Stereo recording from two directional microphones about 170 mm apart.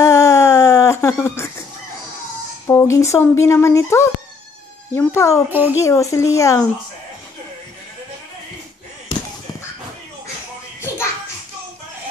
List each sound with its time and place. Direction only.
0.0 s a sound: 20° left (ahead or behind)
2.6 s speech: 15° left (ahead or behind)
5.5 s speech: 10° right (ahead or behind)
5.8 s speech: 20° left (ahead or behind)